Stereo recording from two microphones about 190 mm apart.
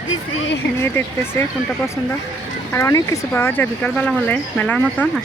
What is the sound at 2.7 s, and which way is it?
Speech, 15° left (ahead or behind).